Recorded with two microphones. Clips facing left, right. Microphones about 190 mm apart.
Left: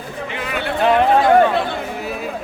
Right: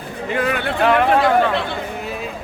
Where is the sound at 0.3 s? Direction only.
50° right (ahead or behind).